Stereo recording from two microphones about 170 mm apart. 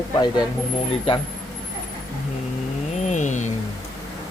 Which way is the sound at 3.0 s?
45° left (ahead or behind).